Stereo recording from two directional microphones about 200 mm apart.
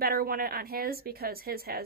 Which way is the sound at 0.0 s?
50° right (ahead or behind).